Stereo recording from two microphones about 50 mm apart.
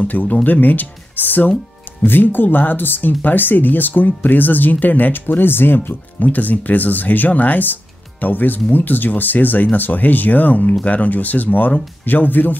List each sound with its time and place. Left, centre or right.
0.0 s speech: left
6.2 s speech: left